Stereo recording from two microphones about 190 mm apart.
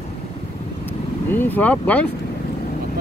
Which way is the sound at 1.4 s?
10° left (ahead or behind).